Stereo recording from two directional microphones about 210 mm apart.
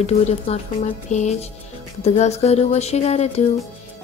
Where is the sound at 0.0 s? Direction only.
30° left (ahead or behind).